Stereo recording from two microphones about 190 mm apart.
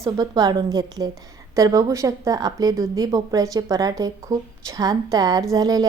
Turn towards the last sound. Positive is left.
turn(degrees=-20)  # may be behind; listen again after turning